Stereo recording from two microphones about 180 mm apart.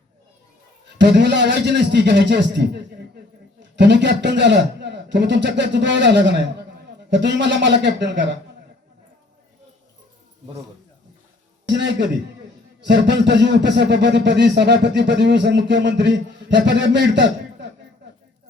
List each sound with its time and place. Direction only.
0.9 s a man's voice: 75° right (ahead or behind)
11.7 s speech: 75° right (ahead or behind)